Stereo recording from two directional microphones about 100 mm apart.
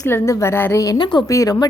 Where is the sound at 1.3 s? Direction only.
35° left (ahead or behind).